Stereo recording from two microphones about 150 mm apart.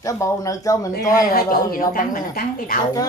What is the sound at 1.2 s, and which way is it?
A woman's voice, 75° left (ahead or behind).